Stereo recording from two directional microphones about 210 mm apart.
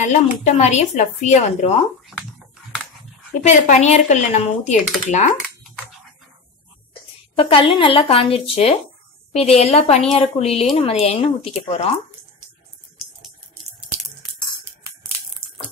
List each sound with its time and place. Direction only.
0.0 s speech: 35° left (ahead or behind)
3.4 s speech: 35° left (ahead or behind)
6.9 s a woman's voice: 25° left (ahead or behind)